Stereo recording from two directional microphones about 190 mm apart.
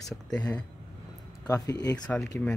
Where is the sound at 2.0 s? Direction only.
5° left (ahead or behind).